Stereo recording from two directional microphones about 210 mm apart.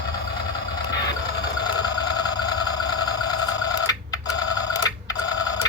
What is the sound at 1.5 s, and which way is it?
Vehicle, 20° left (ahead or behind).